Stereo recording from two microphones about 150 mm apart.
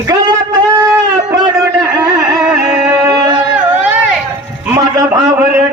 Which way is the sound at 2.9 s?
25° right (ahead or behind).